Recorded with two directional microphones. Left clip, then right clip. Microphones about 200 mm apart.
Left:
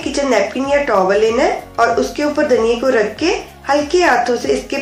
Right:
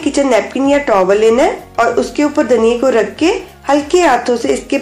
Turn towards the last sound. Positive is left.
turn(degrees=-40)  # may be behind; listen again after turning